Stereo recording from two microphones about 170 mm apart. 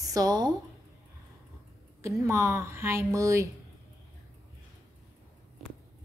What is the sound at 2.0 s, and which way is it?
A woman's voice, 15° right (ahead or behind).